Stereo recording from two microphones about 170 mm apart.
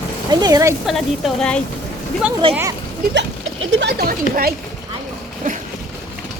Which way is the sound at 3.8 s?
70° right (ahead or behind).